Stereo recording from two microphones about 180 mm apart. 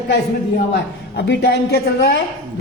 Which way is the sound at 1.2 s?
65° left (ahead or behind).